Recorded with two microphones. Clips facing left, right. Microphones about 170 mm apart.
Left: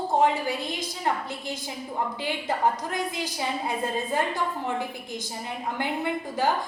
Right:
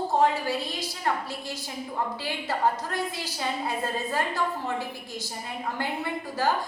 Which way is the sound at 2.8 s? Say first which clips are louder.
Left 2 dB; 15° left (ahead or behind).